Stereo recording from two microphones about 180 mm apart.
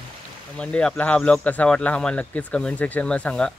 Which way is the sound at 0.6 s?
5° left (ahead or behind).